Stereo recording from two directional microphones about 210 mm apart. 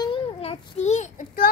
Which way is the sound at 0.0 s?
25° left (ahead or behind).